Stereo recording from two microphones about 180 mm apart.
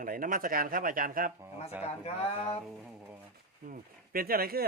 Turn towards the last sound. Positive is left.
turn(degrees=-55)  # may be behind; listen again after turning